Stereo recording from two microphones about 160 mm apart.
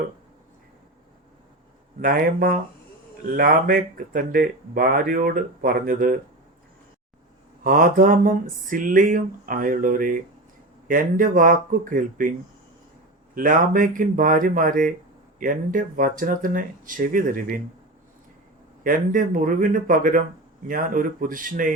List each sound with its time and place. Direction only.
2.0 s speech: 65° right (ahead or behind)
7.6 s speech: 60° right (ahead or behind)
13.3 s speech: 55° right (ahead or behind)
18.8 s speech: 55° right (ahead or behind)